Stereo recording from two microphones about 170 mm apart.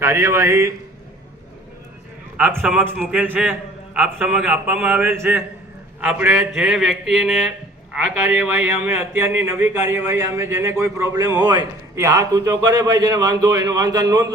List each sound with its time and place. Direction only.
0.0 s speech: 20° right (ahead or behind)
2.4 s a man's voice: 10° right (ahead or behind)
7.9 s a man's voice: 10° right (ahead or behind)